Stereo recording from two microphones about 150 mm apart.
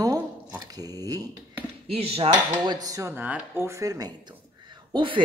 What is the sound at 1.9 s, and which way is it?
Speech, 40° right (ahead or behind).